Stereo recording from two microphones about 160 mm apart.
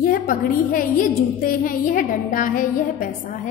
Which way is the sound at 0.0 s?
60° left (ahead or behind).